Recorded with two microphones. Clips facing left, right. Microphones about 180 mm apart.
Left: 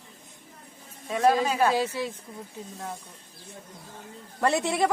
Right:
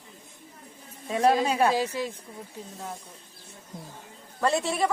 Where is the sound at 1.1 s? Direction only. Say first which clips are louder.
Even; 30° right (ahead or behind).